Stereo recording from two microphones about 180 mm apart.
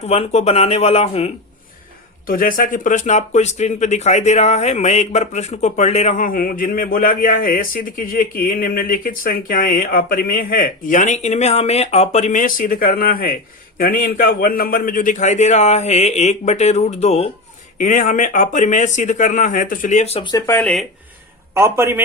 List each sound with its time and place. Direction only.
0.0 s a man's voice: 35° left (ahead or behind)
2.2 s a man's voice: 50° left (ahead or behind); by 20.3 s 35° left (ahead or behind)
20.3 s speech: 10° left (ahead or behind)
21.6 s a man's voice: 15° right (ahead or behind)